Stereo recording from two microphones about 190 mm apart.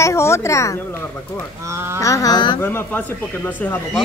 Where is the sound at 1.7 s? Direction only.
15° right (ahead or behind).